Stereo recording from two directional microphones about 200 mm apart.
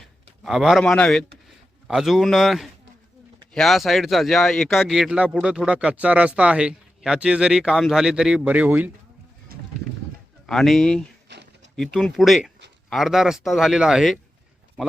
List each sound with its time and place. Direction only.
0.4 s speech: centre (ahead or behind)
9.5 s run: 50° right (ahead or behind)
10.4 s speech: centre (ahead or behind)
11.3 s a sound: 60° right (ahead or behind)
11.8 s speech: centre (ahead or behind)